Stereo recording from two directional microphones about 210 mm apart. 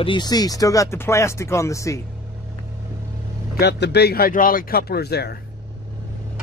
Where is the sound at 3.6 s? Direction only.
50° left (ahead or behind).